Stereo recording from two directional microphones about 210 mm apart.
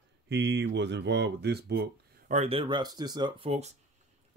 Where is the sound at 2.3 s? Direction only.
25° right (ahead or behind).